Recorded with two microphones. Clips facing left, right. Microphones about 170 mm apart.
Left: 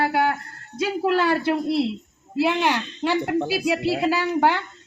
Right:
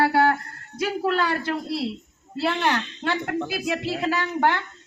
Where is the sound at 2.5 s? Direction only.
10° left (ahead or behind).